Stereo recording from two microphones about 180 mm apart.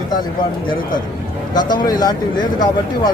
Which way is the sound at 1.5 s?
25° left (ahead or behind).